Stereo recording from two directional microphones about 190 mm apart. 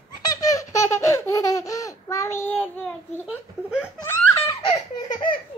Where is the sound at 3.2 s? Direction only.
5° right (ahead or behind).